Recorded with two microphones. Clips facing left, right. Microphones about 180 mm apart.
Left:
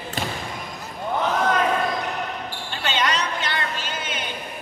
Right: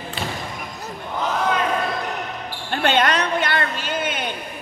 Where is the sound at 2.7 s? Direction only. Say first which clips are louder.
Right 6 dB; 55° right (ahead or behind).